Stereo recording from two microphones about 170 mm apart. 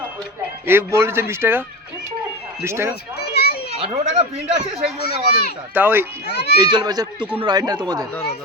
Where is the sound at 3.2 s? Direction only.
70° left (ahead or behind).